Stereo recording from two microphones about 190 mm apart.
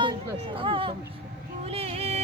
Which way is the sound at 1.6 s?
30° right (ahead or behind).